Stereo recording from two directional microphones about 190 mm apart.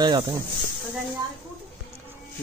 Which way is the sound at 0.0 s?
25° right (ahead or behind).